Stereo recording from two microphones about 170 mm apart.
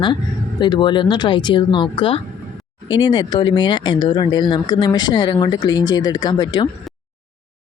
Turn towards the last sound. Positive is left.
turn(degrees=25)  # may be behind; listen again after turning